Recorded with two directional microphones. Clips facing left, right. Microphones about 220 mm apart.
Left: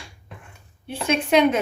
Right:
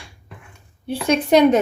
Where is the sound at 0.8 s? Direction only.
35° right (ahead or behind).